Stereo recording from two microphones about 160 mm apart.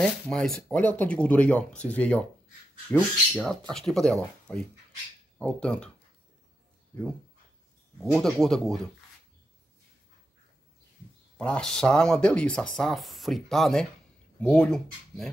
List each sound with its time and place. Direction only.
0.0 s speech: 5° left (ahead or behind)
8.0 s speech: centre (ahead or behind)
11.3 s speech: 5° left (ahead or behind)